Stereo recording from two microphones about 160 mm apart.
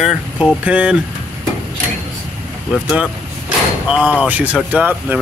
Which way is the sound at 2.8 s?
5° right (ahead or behind).